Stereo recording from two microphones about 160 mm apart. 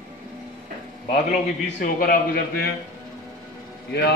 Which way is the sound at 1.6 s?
75° left (ahead or behind).